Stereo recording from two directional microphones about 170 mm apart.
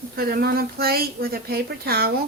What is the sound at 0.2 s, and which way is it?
Speech, 60° right (ahead or behind).